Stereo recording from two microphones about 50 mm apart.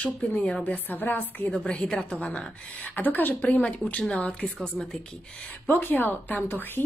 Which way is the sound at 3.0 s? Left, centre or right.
Left.